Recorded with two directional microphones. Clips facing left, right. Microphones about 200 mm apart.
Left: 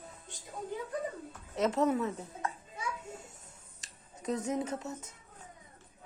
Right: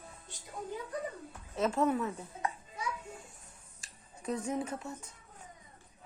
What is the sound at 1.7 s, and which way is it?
Speech, 20° left (ahead or behind).